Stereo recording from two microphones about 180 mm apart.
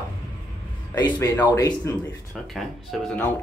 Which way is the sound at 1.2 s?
20° left (ahead or behind).